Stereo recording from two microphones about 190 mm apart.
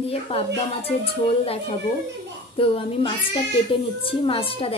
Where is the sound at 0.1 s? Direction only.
30° left (ahead or behind).